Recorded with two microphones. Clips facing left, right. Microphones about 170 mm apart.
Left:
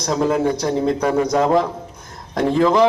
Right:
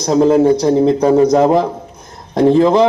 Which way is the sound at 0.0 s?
30° right (ahead or behind).